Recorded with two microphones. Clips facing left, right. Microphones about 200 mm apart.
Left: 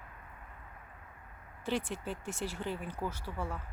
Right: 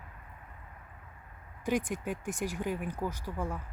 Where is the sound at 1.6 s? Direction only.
15° right (ahead or behind).